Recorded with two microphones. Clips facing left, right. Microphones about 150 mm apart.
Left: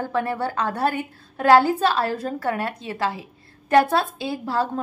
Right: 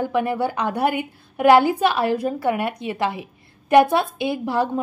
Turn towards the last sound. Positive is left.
turn(degrees=-15)  # may be behind; listen again after turning